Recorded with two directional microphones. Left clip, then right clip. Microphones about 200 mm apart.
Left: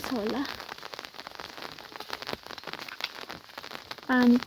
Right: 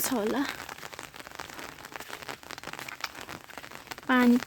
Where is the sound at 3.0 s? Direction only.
30° left (ahead or behind).